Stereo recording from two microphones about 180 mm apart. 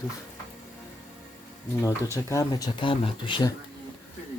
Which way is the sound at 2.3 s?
20° left (ahead or behind).